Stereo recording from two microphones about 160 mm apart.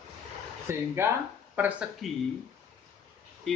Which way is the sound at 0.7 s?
15° right (ahead or behind).